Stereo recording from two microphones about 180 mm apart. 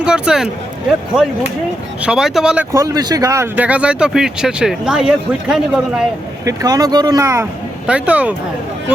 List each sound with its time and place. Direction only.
0.0 s speech: 5° right (ahead or behind)
2.0 s speech: 5° right (ahead or behind)
2.7 s speech: 20° right (ahead or behind); by 6.1 s 5° right (ahead or behind)
6.4 s speech: 20° right (ahead or behind)
7.9 s speech: 5° right (ahead or behind)